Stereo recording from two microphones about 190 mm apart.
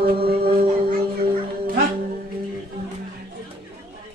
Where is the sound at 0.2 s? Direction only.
55° right (ahead or behind).